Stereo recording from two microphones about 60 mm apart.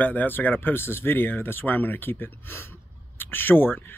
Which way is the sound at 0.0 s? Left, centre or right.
Left.